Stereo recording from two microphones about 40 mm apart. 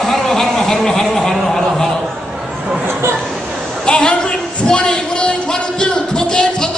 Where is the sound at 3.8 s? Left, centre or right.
Centre.